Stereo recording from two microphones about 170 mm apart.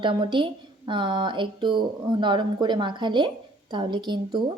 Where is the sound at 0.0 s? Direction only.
30° right (ahead or behind).